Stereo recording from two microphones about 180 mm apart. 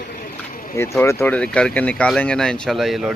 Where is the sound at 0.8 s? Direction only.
15° left (ahead or behind); by 3.1 s centre (ahead or behind).